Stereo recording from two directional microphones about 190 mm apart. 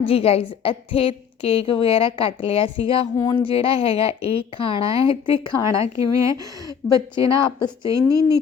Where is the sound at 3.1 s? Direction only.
15° left (ahead or behind).